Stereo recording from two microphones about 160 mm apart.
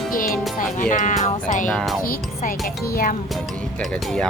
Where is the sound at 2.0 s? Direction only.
60° left (ahead or behind).